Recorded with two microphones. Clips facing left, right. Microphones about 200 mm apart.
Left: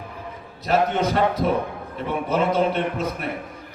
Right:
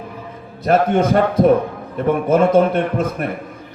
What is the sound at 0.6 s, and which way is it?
A man's voice, 50° right (ahead or behind).